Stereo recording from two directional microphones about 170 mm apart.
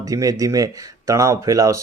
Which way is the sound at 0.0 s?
20° right (ahead or behind).